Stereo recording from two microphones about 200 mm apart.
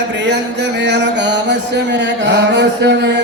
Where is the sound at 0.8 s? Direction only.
60° right (ahead or behind).